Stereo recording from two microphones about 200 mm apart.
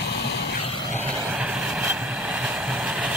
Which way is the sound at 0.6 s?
30° left (ahead or behind).